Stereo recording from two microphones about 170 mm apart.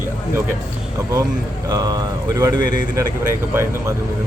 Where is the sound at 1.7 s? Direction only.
20° right (ahead or behind).